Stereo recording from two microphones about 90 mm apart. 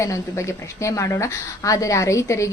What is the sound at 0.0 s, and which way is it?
A woman's voice, 35° left (ahead or behind).